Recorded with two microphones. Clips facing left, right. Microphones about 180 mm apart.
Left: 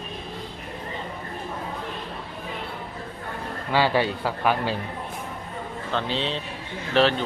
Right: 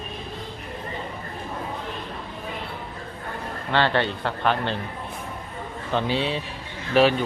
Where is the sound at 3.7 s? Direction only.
10° left (ahead or behind).